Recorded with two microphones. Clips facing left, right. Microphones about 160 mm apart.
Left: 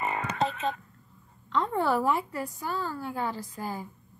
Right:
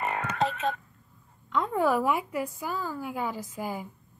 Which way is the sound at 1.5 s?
5° right (ahead or behind).